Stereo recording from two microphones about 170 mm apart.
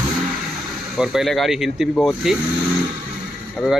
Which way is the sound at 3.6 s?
Centre (ahead or behind).